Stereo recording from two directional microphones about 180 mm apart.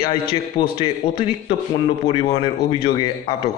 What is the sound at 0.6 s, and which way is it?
A man's voice, 30° left (ahead or behind).